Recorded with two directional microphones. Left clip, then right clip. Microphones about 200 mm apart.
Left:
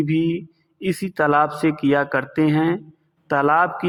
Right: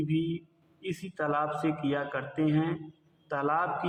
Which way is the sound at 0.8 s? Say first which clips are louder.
Left 13 dB; 40° left (ahead or behind).